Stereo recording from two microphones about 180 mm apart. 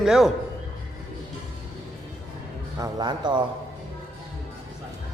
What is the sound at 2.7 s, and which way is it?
Speech, 20° right (ahead or behind).